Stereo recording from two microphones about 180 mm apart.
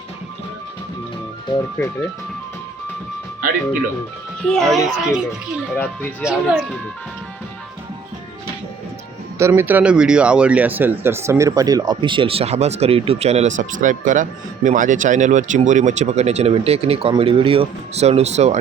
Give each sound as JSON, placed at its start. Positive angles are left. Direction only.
{"t": 1.8, "sound": "speech", "side_deg": 10}
{"t": 4.4, "sound": "speech", "side_deg": 0}
{"t": 6.2, "sound": "speech", "side_deg": -5}
{"t": 9.4, "sound": "speech", "side_deg": -10}